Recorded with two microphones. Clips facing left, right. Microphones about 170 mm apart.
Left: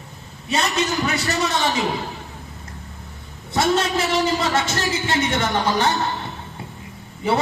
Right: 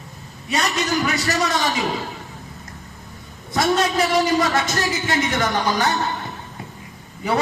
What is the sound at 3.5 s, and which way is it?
A man's voice, 25° left (ahead or behind).